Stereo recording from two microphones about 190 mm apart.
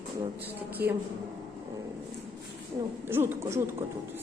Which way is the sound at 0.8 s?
55° right (ahead or behind).